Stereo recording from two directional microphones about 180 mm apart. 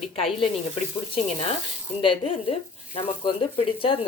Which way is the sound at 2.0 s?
30° left (ahead or behind).